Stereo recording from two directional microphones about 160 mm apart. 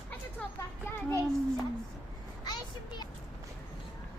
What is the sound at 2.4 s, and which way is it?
Vehicle, 25° left (ahead or behind).